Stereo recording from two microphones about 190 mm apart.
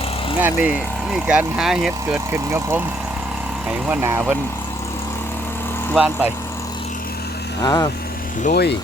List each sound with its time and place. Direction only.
0.4 s speech: 10° right (ahead or behind)
3.8 s speech: 10° right (ahead or behind)
5.9 s speech: 5° right (ahead or behind)
7.6 s speech: 20° left (ahead or behind)
8.4 s speech: 60° left (ahead or behind)